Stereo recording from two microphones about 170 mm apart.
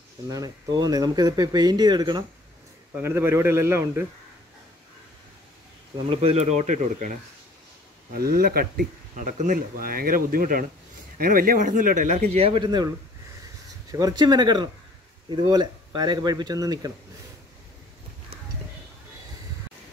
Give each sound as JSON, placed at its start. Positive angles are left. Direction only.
{"t": 0.3, "sound": "speech", "side_deg": -20}
{"t": 3.0, "sound": "a man's voice", "side_deg": -15}
{"t": 6.0, "sound": "speech", "side_deg": -40}
{"t": 8.1, "sound": "a man's voice", "side_deg": -60}
{"t": 13.9, "sound": "speech", "side_deg": -25}